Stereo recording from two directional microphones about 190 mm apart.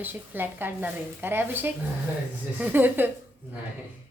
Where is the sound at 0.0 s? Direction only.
10° right (ahead or behind).